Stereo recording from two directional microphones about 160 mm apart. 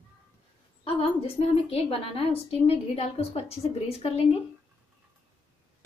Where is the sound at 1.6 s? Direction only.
35° left (ahead or behind).